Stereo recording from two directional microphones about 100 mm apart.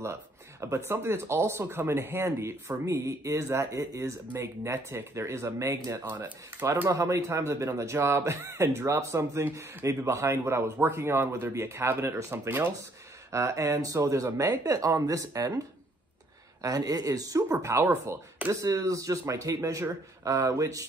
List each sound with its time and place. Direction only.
0.0 s speech: 30° right (ahead or behind)
6.0 s speech: 15° right (ahead or behind)
6.6 s speech: 30° right (ahead or behind)
16.6 s speech: 40° right (ahead or behind)